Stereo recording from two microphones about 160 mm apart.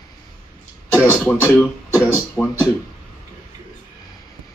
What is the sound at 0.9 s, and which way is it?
Speech, 10° left (ahead or behind).